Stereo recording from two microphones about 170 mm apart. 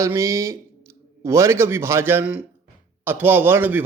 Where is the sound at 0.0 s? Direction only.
15° right (ahead or behind).